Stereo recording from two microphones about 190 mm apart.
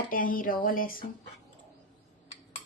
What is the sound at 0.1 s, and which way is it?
Speech, 45° left (ahead or behind).